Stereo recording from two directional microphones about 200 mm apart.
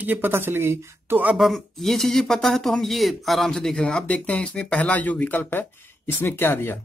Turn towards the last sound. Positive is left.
turn(degrees=10)  # may be behind; listen again after turning